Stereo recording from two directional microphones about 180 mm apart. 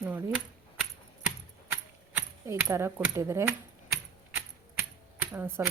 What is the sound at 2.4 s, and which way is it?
Speech, 15° right (ahead or behind).